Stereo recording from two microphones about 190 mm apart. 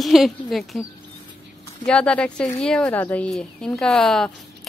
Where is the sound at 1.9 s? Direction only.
5° left (ahead or behind).